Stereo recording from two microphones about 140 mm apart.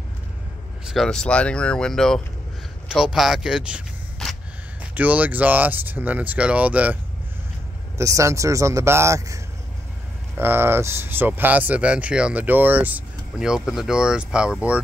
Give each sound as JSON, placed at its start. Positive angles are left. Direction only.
{"t": 0.8, "sound": "speech", "side_deg": 0}
{"t": 8.0, "sound": "speech", "side_deg": -20}